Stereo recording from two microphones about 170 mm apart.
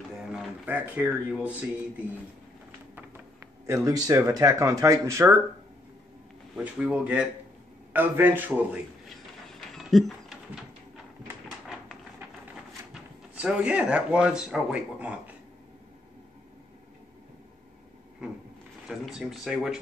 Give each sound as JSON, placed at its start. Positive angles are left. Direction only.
{"t": 0.3, "sound": "speech", "side_deg": -5}
{"t": 3.6, "sound": "speech", "side_deg": -20}
{"t": 6.5, "sound": "speech", "side_deg": -5}
{"t": 9.8, "sound": "patter", "side_deg": 0}
{"t": 12.9, "sound": "speech", "side_deg": -5}
{"t": 18.2, "sound": "a sound", "side_deg": -5}
{"t": 18.9, "sound": "speech", "side_deg": 0}